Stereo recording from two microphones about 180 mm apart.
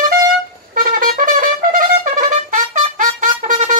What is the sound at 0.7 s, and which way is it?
Trumpet, 50° right (ahead or behind).